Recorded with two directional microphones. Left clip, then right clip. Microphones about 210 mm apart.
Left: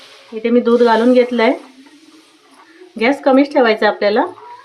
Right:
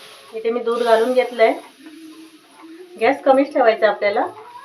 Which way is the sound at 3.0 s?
50° left (ahead or behind).